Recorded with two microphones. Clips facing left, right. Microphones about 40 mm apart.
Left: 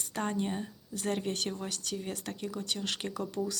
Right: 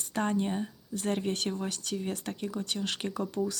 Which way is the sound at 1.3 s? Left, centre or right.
Centre.